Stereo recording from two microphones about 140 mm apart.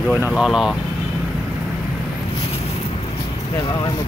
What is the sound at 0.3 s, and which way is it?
Speech, 5° right (ahead or behind).